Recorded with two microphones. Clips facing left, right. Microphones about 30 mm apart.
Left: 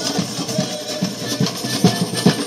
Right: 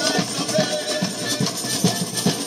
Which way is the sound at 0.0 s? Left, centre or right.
Centre.